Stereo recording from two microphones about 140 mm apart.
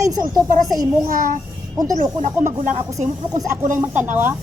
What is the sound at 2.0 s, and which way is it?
Speech, 60° right (ahead or behind).